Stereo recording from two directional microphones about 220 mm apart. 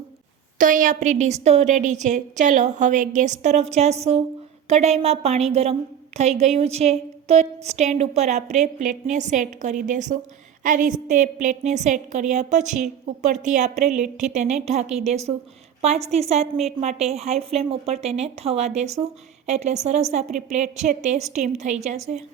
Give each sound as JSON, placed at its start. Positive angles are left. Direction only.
{"t": 0.6, "sound": "a woman's voice", "side_deg": -35}